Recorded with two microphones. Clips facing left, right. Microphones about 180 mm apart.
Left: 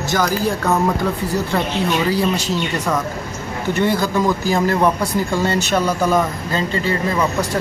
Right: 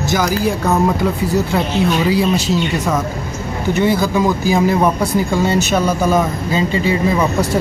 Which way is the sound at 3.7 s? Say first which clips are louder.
Right 3 dB; 10° right (ahead or behind).